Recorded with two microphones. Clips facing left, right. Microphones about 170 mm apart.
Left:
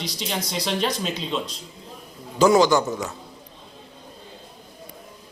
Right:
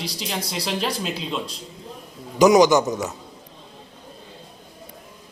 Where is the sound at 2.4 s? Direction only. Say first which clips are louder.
Right 2 dB; 15° right (ahead or behind).